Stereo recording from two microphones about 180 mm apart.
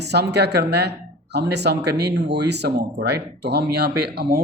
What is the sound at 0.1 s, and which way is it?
Speech, 70° right (ahead or behind).